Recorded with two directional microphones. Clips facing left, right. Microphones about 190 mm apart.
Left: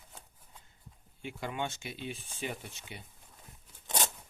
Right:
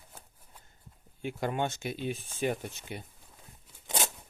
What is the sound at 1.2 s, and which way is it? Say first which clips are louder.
Speech: right 5 dB; 45° right (ahead or behind).